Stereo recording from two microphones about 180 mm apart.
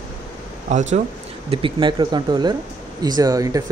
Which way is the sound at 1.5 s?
25° right (ahead or behind).